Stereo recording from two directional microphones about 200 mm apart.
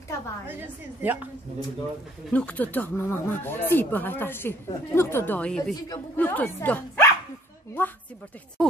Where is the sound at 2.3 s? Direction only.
5° left (ahead or behind).